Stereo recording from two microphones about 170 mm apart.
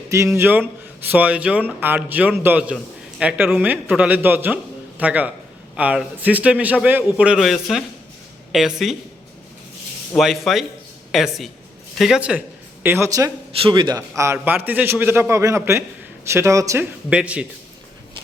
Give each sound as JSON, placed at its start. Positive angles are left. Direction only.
{"t": 0.3, "sound": "a man's voice", "side_deg": -10}
{"t": 10.2, "sound": "a man's voice", "side_deg": 0}